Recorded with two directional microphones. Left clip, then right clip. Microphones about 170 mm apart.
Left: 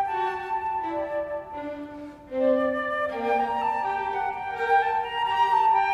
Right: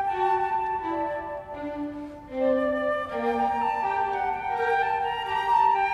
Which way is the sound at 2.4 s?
20° left (ahead or behind).